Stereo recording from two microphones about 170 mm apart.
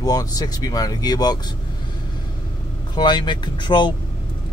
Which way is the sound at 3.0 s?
25° left (ahead or behind).